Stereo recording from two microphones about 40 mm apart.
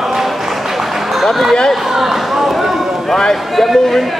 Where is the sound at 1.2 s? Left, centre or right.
Centre.